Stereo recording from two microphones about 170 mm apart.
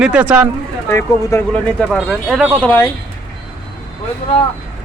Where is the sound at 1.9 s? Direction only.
Centre (ahead or behind).